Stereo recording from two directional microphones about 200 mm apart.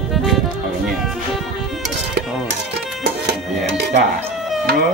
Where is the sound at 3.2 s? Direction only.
55° right (ahead or behind).